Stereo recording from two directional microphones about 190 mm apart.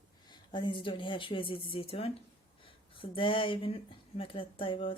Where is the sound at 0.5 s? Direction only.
25° left (ahead or behind).